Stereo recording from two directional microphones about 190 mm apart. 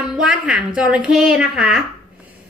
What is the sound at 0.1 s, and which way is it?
A woman's voice, 5° right (ahead or behind).